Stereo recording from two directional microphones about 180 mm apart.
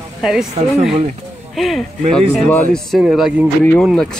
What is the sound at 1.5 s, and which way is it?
Speech, centre (ahead or behind).